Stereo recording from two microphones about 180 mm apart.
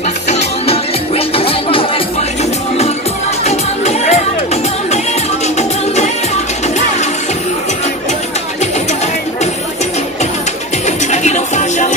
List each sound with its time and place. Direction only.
0.3 s music: 35° left (ahead or behind)
3.4 s music: 35° left (ahead or behind)
11.1 s music: 40° left (ahead or behind)